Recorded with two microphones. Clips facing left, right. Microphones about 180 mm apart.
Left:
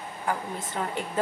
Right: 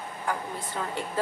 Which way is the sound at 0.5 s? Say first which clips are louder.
Left 1 dB; 20° left (ahead or behind).